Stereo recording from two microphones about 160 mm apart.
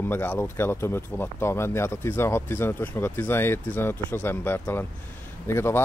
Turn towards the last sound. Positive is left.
turn(degrees=15)  # may be behind; listen again after turning